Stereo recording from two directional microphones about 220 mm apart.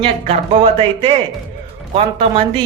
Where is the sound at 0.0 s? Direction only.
25° right (ahead or behind).